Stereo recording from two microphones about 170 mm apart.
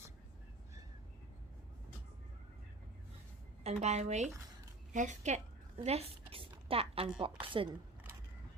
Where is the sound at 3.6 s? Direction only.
40° right (ahead or behind).